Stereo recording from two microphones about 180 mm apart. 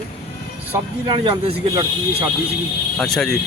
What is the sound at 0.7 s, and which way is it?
Speech, 25° right (ahead or behind).